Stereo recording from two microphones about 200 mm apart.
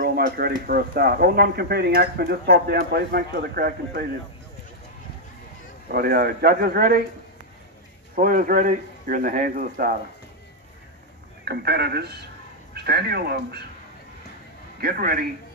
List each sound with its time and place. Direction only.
0.0 s a sound: 50° right (ahead or behind)
0.7 s speech: 50° right (ahead or behind)
5.9 s speech: 50° right (ahead or behind)
8.2 s speech: 45° right (ahead or behind)
11.4 s speech: 55° right (ahead or behind)
14.8 s speech: 45° right (ahead or behind)